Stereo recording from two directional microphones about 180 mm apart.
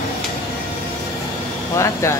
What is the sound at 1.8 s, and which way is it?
Speech, 15° left (ahead or behind).